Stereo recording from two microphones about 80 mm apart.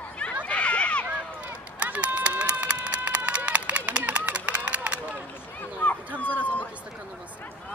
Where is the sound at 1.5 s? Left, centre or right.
Centre.